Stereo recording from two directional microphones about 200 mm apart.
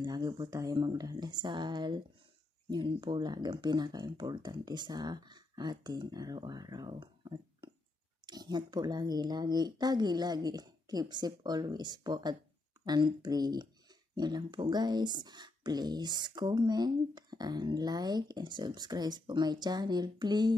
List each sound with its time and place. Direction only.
0.0 s speech: 20° right (ahead or behind)